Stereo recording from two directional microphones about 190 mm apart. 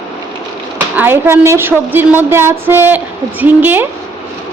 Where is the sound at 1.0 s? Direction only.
10° right (ahead or behind).